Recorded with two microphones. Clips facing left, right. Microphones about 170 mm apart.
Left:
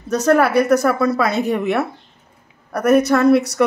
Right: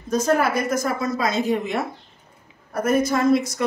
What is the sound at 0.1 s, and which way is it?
A woman's voice, 70° left (ahead or behind).